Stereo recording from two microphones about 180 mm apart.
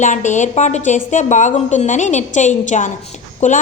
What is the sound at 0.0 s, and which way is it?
A woman's voice, 40° left (ahead or behind).